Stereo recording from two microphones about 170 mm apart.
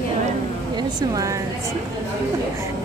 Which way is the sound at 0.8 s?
20° right (ahead or behind).